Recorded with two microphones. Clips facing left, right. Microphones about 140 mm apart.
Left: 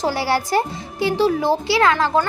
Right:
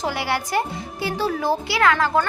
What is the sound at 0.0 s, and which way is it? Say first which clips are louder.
A child's voice: left 4 dB; 35° left (ahead or behind).